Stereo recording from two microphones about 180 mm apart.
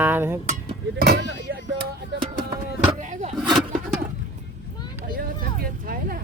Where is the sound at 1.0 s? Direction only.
70° right (ahead or behind).